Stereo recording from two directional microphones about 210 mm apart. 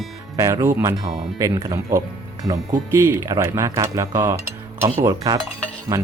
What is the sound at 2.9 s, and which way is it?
Speech, 15° right (ahead or behind).